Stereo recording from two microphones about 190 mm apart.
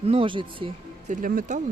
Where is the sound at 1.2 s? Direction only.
45° right (ahead or behind).